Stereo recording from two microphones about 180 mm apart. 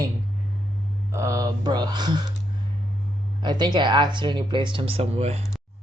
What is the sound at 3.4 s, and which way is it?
Speech, 25° right (ahead or behind).